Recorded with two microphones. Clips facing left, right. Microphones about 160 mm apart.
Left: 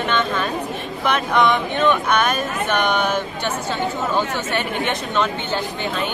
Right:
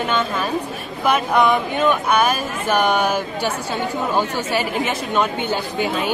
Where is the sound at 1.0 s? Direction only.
10° right (ahead or behind).